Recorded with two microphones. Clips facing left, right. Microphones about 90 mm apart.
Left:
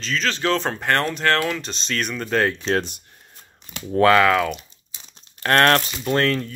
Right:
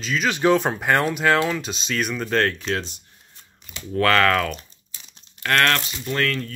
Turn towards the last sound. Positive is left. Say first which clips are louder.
# left 3 dB
turn(degrees=25)  # may be behind; listen again after turning